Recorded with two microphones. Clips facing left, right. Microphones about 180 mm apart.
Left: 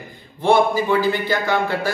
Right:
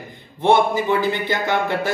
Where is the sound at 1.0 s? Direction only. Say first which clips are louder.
Left 1 dB; 20° right (ahead or behind).